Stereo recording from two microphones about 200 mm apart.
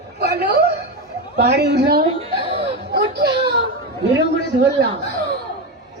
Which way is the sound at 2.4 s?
30° right (ahead or behind).